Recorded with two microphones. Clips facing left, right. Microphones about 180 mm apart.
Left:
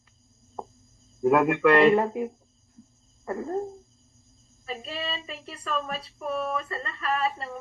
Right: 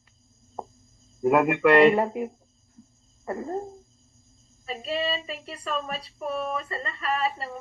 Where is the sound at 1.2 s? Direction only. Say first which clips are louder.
Even; 15° right (ahead or behind).